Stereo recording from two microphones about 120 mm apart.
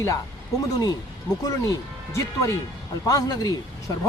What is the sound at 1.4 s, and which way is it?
Speech, 30° left (ahead or behind).